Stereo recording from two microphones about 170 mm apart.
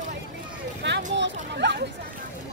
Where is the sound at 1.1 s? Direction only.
90° right.